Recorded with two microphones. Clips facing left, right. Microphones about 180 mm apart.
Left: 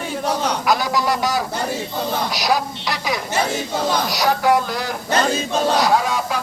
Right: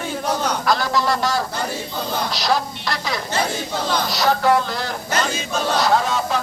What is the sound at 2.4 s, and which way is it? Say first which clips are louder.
Speech: even; 15° left (ahead or behind).